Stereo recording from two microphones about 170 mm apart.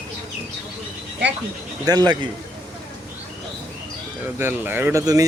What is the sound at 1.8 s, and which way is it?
Speech, 20° right (ahead or behind).